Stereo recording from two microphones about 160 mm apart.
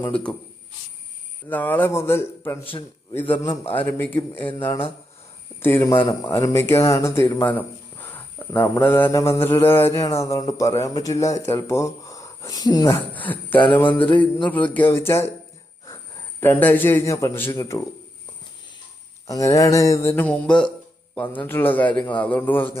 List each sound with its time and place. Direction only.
0.1 s speech: 5° left (ahead or behind)
1.5 s speech: 10° left (ahead or behind)
2.7 s a man's voice: 30° left (ahead or behind)
3.4 s speech: 20° left (ahead or behind)
5.5 s speech: 15° left (ahead or behind)
13.1 s speech: 10° left (ahead or behind)
16.4 s speech: 10° left (ahead or behind)
19.3 s speech: 20° left (ahead or behind)